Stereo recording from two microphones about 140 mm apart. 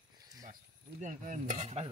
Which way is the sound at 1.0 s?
65° right (ahead or behind).